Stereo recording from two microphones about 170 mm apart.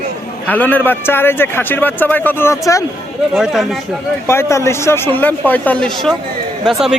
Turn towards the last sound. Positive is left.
turn(degrees=0)  # may be behind; listen again after turning